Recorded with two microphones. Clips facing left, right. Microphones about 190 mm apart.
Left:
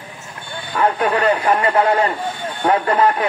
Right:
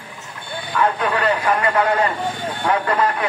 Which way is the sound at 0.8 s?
30° left (ahead or behind).